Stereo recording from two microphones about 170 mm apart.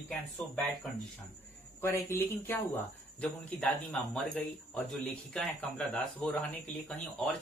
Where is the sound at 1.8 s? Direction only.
15° left (ahead or behind).